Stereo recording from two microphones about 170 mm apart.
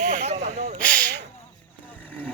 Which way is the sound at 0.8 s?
5° left (ahead or behind).